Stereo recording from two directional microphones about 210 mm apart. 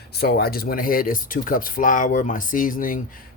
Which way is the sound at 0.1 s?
50° left (ahead or behind).